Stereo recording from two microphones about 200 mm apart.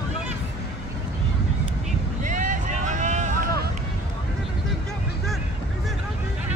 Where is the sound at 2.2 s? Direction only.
40° right (ahead or behind).